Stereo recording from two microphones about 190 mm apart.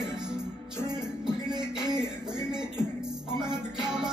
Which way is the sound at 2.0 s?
5° right (ahead or behind).